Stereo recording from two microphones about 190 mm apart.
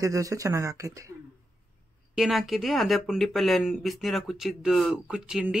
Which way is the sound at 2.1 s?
Centre (ahead or behind).